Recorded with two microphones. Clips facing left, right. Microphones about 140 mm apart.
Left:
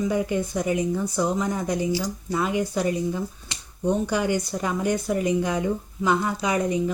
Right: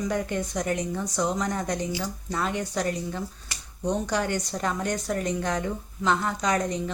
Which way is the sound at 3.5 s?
20° left (ahead or behind).